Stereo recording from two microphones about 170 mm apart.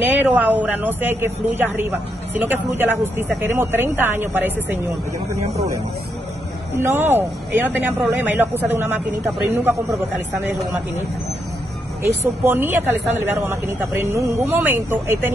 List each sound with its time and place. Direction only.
0.0 s speech: 10° right (ahead or behind)
6.8 s speech: 15° right (ahead or behind)
12.0 s speech: 15° right (ahead or behind)